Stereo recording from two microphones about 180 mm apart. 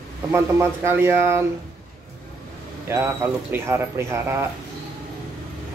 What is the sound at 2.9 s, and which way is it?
Speech, 15° right (ahead or behind).